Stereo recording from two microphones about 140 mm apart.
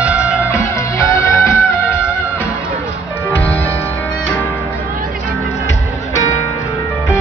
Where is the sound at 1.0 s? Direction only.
20° left (ahead or behind).